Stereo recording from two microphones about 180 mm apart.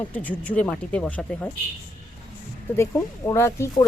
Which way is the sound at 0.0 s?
10° left (ahead or behind).